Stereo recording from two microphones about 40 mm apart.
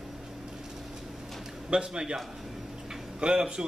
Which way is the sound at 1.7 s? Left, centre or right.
Right.